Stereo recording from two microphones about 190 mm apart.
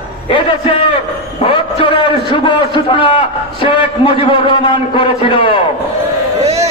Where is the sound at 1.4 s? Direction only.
30° left (ahead or behind).